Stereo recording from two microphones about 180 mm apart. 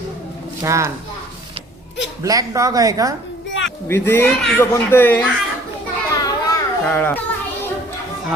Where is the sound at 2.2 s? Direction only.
20° right (ahead or behind).